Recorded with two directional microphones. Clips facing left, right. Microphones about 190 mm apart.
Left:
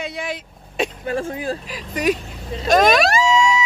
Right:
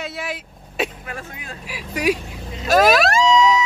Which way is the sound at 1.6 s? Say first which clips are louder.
Right 2 dB; 10° right (ahead or behind).